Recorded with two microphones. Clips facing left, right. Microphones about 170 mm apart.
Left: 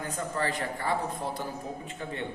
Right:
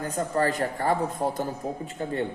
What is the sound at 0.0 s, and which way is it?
A man's voice, 40° right (ahead or behind).